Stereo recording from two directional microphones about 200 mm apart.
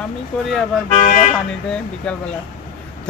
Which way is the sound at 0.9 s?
40° left (ahead or behind).